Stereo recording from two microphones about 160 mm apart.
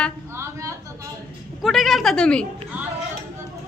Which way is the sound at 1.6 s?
Centre (ahead or behind).